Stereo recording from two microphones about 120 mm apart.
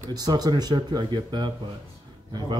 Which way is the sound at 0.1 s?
35° right (ahead or behind).